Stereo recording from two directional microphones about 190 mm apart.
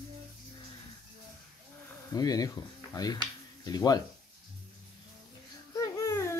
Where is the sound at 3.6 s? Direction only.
20° left (ahead or behind).